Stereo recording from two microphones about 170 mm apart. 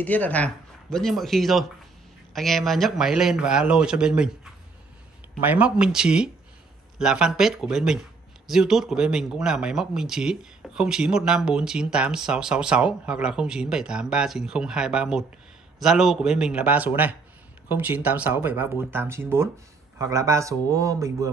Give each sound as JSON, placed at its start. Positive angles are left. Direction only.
{"t": 0.0, "sound": "speech", "side_deg": 10}
{"t": 5.4, "sound": "speech", "side_deg": -10}